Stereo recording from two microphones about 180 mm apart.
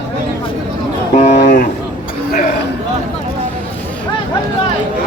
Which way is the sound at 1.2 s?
40° left (ahead or behind).